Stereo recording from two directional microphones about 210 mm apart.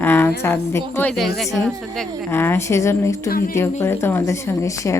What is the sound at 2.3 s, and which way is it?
Speech, 10° left (ahead or behind).